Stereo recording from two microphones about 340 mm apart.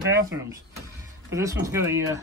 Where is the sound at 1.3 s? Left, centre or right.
Centre.